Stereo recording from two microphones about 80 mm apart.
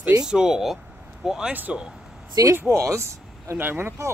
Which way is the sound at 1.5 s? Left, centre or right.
Right.